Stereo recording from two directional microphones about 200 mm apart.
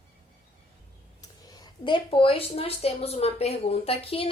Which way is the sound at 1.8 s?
25° left (ahead or behind).